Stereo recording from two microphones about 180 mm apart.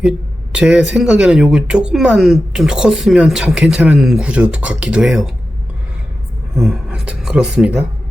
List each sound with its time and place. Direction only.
0.5 s speech: 5° right (ahead or behind)
6.6 s speech: 5° right (ahead or behind)